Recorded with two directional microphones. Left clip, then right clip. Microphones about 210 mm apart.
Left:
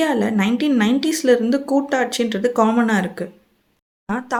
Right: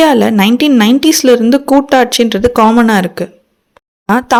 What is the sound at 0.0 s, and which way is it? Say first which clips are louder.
Speech: right 11 dB; 40° right (ahead or behind).